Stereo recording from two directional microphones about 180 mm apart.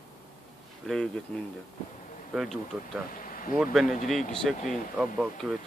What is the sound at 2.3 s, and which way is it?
Speech, centre (ahead or behind).